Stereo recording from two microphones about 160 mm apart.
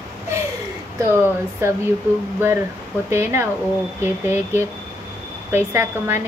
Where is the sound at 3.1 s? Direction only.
15° right (ahead or behind).